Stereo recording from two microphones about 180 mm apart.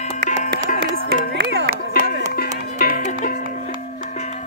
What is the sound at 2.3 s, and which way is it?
Music, 55° left (ahead or behind).